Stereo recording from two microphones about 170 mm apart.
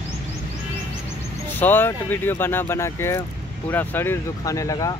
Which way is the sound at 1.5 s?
10° left (ahead or behind).